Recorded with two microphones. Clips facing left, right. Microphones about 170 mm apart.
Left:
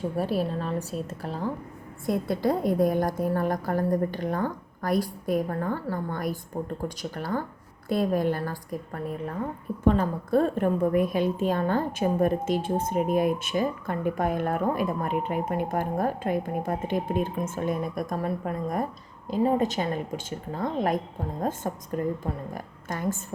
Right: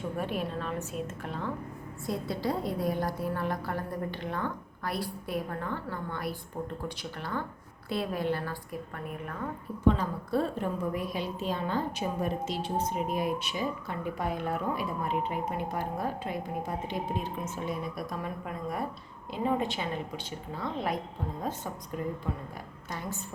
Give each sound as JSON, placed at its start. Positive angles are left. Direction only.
{"t": 0.2, "sound": "a woman's voice", "side_deg": 35}
{"t": 2.0, "sound": "a woman's voice", "side_deg": 50}
{"t": 9.8, "sound": "a woman's voice", "side_deg": 50}
{"t": 22.2, "sound": "a woman's voice", "side_deg": 45}